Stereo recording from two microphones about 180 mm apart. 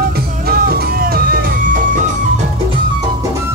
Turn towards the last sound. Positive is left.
turn(degrees=-50)  # may be behind; listen again after turning